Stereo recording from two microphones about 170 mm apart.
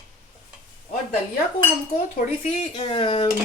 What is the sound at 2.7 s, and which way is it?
Speech, 30° left (ahead or behind).